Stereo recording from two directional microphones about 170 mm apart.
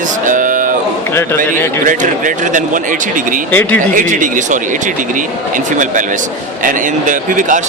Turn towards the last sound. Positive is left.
turn(degrees=-50)  # may be behind; listen again after turning